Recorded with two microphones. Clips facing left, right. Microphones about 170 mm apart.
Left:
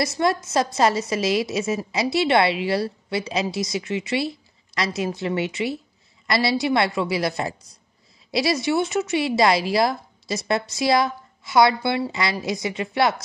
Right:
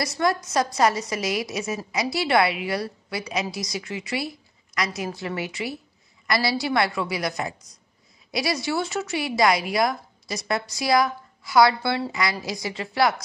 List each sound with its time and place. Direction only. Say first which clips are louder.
0.0 s a woman's voice: left 2 dB; 25° left (ahead or behind)